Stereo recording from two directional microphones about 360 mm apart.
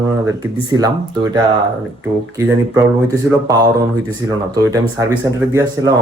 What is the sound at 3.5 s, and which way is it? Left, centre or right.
A man's voice, centre.